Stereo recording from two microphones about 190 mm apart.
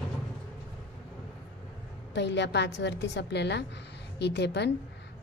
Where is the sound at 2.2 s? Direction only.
65° left (ahead or behind).